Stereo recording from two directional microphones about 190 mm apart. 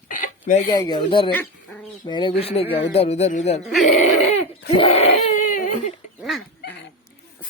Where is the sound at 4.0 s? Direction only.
35° left (ahead or behind).